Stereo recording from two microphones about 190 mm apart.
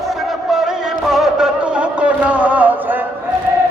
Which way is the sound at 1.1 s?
Centre (ahead or behind).